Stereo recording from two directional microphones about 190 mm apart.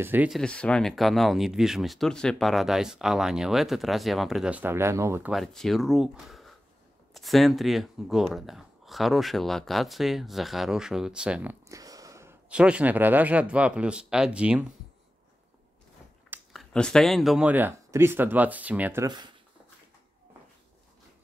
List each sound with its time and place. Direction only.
0.0 s speech: 10° right (ahead or behind)
0.4 s speech: 5° left (ahead or behind); by 5.3 s 15° right (ahead or behind)
5.3 s speech: centre (ahead or behind)
11.7 s speech: 20° right (ahead or behind)
16.5 s speech: 5° left (ahead or behind)
19.0 s speech: 20° right (ahead or behind)